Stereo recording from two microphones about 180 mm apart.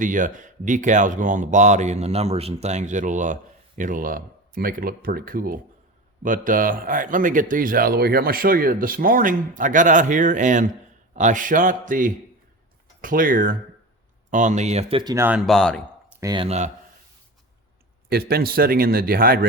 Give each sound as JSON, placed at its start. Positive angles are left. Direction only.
{"t": 0.0, "sound": "a man's voice", "side_deg": -45}
{"t": 15.1, "sound": "speech", "side_deg": -15}
{"t": 15.4, "sound": "a man's voice", "side_deg": 5}
{"t": 16.2, "sound": "speech", "side_deg": -25}
{"t": 16.5, "sound": "speech", "side_deg": -40}
{"t": 18.1, "sound": "speech", "side_deg": -60}